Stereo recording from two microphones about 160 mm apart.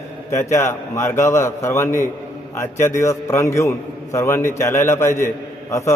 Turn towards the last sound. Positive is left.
turn(degrees=20)  # may be behind; listen again after turning